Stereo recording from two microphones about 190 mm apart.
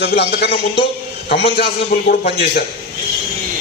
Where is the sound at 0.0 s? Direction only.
60° left (ahead or behind).